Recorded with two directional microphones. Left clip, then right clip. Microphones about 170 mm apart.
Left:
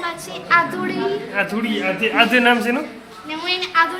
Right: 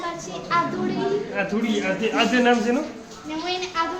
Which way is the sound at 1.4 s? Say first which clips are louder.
Left 3 dB; 15° left (ahead or behind).